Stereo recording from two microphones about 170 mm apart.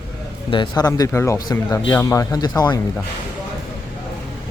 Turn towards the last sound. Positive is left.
turn(degrees=25)  # may be behind; listen again after turning